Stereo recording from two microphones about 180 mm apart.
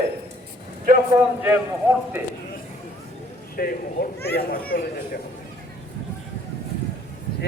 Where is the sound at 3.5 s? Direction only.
55° left (ahead or behind).